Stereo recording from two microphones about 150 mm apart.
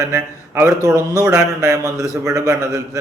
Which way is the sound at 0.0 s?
20° right (ahead or behind).